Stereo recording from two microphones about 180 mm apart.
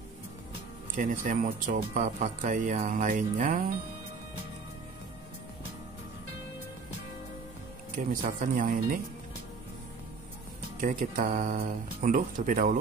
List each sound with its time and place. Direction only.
0.9 s speech: 45° right (ahead or behind)
8.1 s speech: 50° right (ahead or behind)
10.8 s speech: 50° right (ahead or behind)